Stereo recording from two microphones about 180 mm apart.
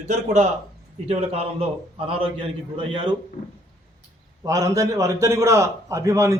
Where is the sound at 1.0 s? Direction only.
35° right (ahead or behind).